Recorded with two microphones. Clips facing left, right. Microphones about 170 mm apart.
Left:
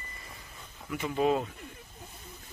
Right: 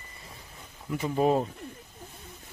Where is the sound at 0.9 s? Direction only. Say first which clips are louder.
Right 3 dB; 40° right (ahead or behind).